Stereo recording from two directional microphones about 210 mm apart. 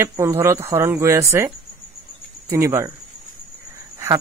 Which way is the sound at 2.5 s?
15° right (ahead or behind).